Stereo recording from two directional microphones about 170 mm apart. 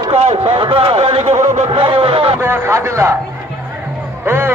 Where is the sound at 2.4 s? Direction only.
15° right (ahead or behind).